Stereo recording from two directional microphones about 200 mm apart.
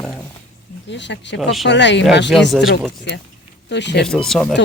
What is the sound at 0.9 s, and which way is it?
Speech, 60° left (ahead or behind).